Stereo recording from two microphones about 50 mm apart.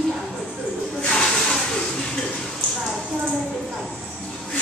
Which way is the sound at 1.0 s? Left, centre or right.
Centre.